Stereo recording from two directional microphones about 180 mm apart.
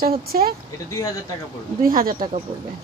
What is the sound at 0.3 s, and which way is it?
Speech, 50° right (ahead or behind).